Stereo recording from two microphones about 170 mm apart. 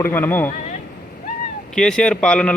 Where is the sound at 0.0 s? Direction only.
10° left (ahead or behind).